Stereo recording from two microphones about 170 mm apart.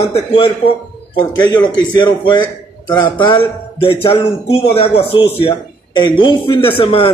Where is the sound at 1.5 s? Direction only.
25° left (ahead or behind).